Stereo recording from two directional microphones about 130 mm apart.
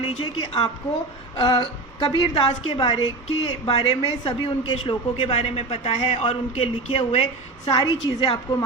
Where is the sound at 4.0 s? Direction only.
40° left (ahead or behind).